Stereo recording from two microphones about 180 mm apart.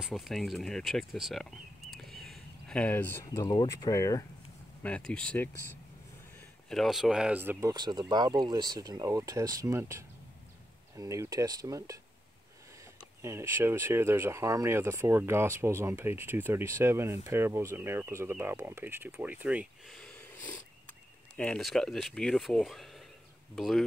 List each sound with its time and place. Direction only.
0.0 s speech: centre (ahead or behind); by 4.3 s 20° left (ahead or behind)
4.8 s speech: 5° left (ahead or behind)
6.7 s speech: centre (ahead or behind)
7.7 s speech: 25° right (ahead or behind)
13.2 s speech: 15° right (ahead or behind)
20.0 s wheeze: 5° left (ahead or behind)
21.4 s speech: 5° left (ahead or behind)